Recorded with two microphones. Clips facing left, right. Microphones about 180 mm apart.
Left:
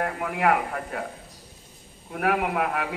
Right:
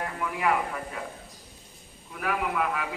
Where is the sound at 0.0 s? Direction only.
60° left (ahead or behind).